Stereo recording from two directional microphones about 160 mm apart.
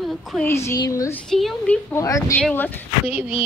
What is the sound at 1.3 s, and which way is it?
Speech, centre (ahead or behind).